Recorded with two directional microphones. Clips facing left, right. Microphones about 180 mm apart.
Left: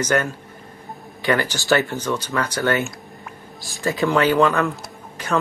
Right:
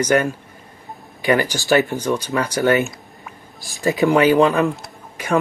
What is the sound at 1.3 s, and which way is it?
Speech, 15° right (ahead or behind).